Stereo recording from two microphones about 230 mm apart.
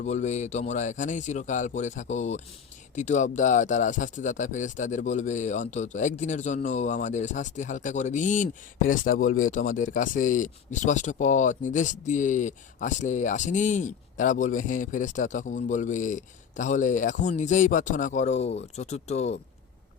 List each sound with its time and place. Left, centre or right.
0.0 s speech: left